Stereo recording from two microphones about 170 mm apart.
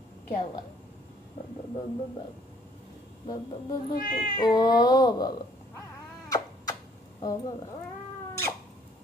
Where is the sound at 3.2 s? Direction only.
25° left (ahead or behind).